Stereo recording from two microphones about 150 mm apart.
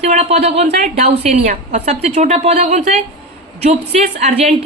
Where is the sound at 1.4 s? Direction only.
70° right (ahead or behind).